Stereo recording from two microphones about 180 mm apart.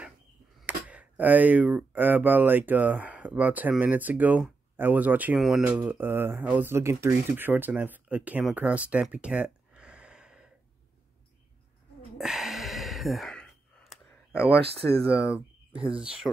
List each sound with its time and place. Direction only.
0.6 s speech: 5° right (ahead or behind)
12.2 s sigh: centre (ahead or behind)
14.6 s speech: 30° right (ahead or behind)
15.0 s speech: 5° right (ahead or behind)